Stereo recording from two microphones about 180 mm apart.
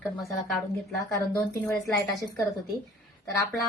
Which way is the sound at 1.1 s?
15° left (ahead or behind).